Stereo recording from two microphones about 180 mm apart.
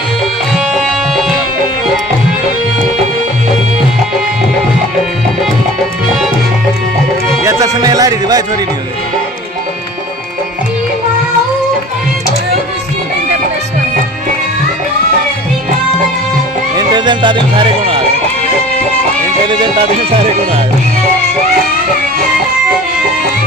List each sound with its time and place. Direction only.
0.6 s music: centre (ahead or behind)
7.4 s music: 20° right (ahead or behind)
16.7 s speech: 25° right (ahead or behind)
19.4 s speech: 25° right (ahead or behind)